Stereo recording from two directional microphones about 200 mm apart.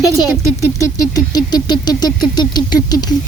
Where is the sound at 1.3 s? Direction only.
20° left (ahead or behind).